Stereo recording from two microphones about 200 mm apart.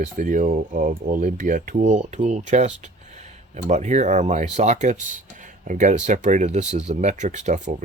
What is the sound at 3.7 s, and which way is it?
Speech, 35° right (ahead or behind).